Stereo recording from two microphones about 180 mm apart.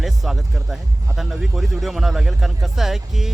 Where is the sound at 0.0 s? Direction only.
Centre (ahead or behind).